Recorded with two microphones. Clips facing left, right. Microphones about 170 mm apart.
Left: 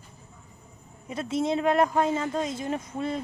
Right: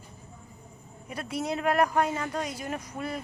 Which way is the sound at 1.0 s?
25° left (ahead or behind).